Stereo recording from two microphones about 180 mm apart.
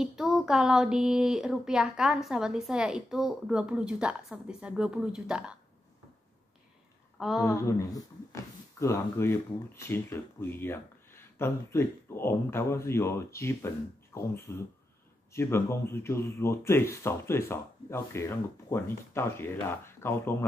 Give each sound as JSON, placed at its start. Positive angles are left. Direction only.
{"t": 0.0, "sound": "speech", "side_deg": -5}
{"t": 7.2, "sound": "a woman's voice", "side_deg": 0}
{"t": 7.4, "sound": "speech", "side_deg": 15}